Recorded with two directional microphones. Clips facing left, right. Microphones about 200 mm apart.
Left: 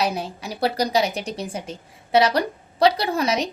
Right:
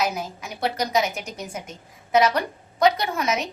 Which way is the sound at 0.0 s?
30° left (ahead or behind).